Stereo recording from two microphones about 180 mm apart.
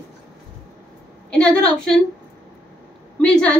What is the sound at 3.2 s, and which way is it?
Speech, 5° left (ahead or behind).